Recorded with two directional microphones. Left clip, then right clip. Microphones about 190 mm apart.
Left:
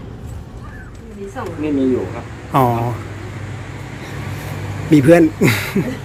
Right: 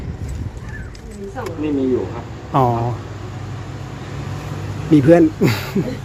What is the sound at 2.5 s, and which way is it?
Speech, centre (ahead or behind).